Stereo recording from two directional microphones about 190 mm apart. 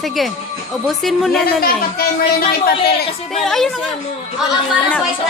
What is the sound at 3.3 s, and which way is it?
Speech, centre (ahead or behind).